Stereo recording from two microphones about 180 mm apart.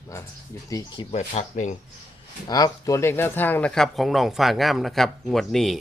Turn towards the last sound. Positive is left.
turn(degrees=0)  # may be behind; listen again after turning